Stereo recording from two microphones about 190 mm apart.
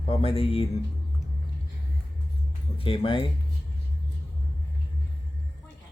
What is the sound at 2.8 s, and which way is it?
Speech, 30° left (ahead or behind).